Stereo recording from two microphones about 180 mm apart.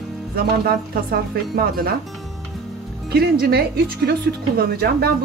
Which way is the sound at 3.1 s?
60° right (ahead or behind).